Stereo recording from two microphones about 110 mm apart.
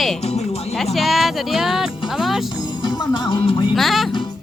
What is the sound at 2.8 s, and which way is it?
Music, 45° left (ahead or behind).